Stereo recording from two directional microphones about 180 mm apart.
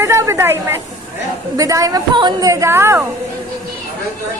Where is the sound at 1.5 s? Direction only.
20° right (ahead or behind).